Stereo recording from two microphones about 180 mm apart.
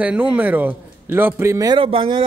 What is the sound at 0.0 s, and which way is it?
A man's voice, 5° right (ahead or behind).